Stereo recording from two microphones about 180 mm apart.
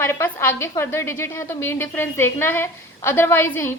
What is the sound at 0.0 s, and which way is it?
A woman's voice, 15° left (ahead or behind).